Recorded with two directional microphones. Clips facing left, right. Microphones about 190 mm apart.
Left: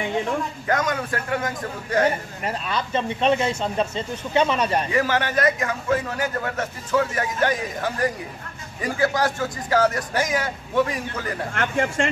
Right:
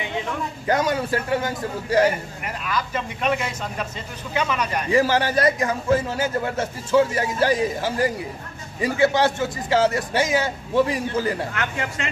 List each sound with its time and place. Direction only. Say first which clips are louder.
0.7 s a man's voice: right 4 dB; 30° right (ahead or behind)
2.0 s speech: even; 30° left (ahead or behind)
4.9 s a man's voice: right 8 dB; 30° right (ahead or behind)
8.9 s a man's voice: right 3 dB; 25° right (ahead or behind)
11.5 s speech: left 5 dB; 50° left (ahead or behind)